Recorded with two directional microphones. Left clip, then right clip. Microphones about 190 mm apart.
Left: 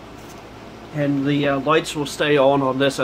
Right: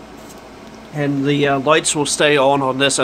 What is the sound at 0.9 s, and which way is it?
Speech, 55° right (ahead or behind).